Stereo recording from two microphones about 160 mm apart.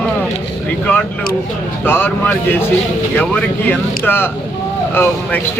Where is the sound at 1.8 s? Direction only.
10° left (ahead or behind).